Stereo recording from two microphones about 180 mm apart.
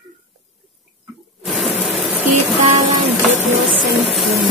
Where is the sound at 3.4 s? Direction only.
35° left (ahead or behind).